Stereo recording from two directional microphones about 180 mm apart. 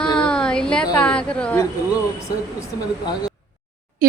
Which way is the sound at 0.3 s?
5° left (ahead or behind).